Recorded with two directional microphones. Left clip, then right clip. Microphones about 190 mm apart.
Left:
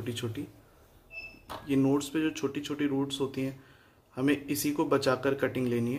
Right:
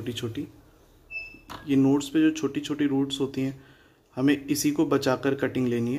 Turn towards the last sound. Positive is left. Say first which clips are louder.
# right 3 dB
turn(degrees=-15)  # may be behind; listen again after turning